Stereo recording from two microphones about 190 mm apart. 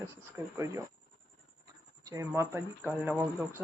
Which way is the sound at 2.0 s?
15° right (ahead or behind).